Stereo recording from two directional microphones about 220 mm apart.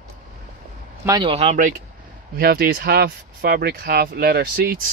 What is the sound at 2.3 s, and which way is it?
Speech, 45° right (ahead or behind).